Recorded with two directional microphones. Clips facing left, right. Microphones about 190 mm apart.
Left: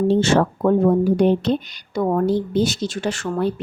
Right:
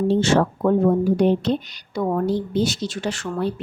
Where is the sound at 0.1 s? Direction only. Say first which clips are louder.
Left 1 dB; 60° left (ahead or behind).